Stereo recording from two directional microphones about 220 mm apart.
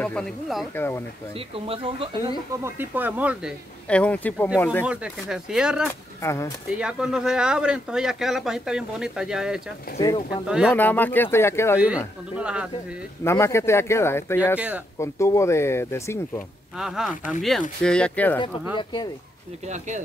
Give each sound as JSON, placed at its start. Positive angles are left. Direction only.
{"t": 0.0, "sound": "speech", "side_deg": 5}
{"t": 1.5, "sound": "speech", "side_deg": -25}
{"t": 2.5, "sound": "speech", "side_deg": -10}
{"t": 3.9, "sound": "speech", "side_deg": 5}
{"t": 4.8, "sound": "speech", "side_deg": -5}
{"t": 6.2, "sound": "speech", "side_deg": 15}
{"t": 6.7, "sound": "speech", "side_deg": -5}
{"t": 9.9, "sound": "speech", "side_deg": 15}
{"t": 10.4, "sound": "speech", "side_deg": -5}
{"t": 10.7, "sound": "speech", "side_deg": 10}
{"t": 12.4, "sound": "speech", "side_deg": -5}
{"t": 13.2, "sound": "speech", "side_deg": 10}
{"t": 16.7, "sound": "speech", "side_deg": 0}
{"t": 18.8, "sound": "speech", "side_deg": 20}